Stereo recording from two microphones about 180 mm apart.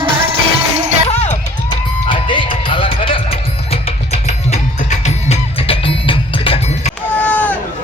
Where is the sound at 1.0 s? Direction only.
40° left (ahead or behind).